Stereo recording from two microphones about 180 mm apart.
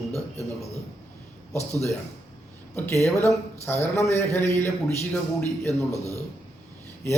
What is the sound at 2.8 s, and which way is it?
Speech, 15° left (ahead or behind).